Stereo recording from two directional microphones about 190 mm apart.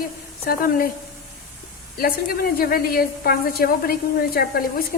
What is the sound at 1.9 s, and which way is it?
A woman's voice, 50° left (ahead or behind).